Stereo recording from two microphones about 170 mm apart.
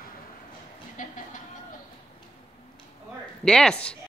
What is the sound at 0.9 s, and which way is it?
Music, 50° left (ahead or behind).